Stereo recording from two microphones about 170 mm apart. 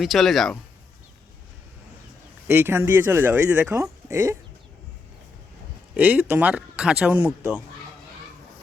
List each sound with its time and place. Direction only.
0.0 s speech: centre (ahead or behind)
2.5 s speech: 10° right (ahead or behind)
5.9 s speech: 10° right (ahead or behind)